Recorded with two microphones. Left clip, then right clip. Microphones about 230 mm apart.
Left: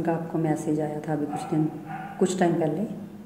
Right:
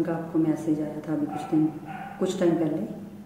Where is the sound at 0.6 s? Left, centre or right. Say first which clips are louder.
Left 1 dB; left.